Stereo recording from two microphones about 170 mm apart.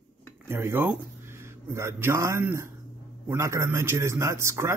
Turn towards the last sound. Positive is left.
turn(degrees=-15)  # may be behind; listen again after turning